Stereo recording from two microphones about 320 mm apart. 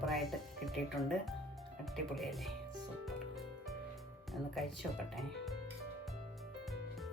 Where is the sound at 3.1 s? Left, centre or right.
Centre.